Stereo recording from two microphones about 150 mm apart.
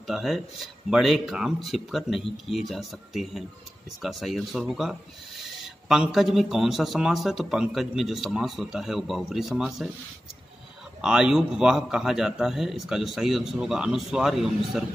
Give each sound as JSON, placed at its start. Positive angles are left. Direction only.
{"t": 0.0, "sound": "a man's voice", "side_deg": 0}
{"t": 11.0, "sound": "a man's voice", "side_deg": -5}